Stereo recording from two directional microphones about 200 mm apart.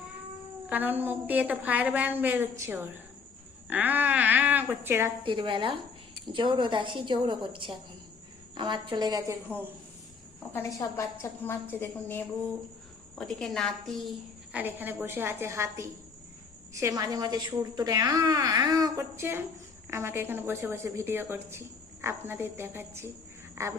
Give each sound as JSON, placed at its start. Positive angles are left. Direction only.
{"t": 0.7, "sound": "a woman's voice", "side_deg": -10}
{"t": 5.2, "sound": "a woman's voice", "side_deg": -25}
{"t": 10.5, "sound": "a woman's voice", "side_deg": 15}
{"t": 14.5, "sound": "a woman's voice", "side_deg": -10}